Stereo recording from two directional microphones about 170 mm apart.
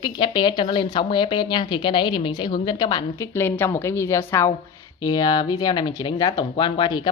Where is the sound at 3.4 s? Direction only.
10° left (ahead or behind).